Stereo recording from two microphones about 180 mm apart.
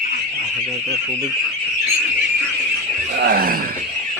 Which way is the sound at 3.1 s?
60° right (ahead or behind).